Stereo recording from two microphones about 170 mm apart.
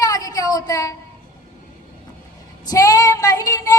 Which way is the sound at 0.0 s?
20° left (ahead or behind).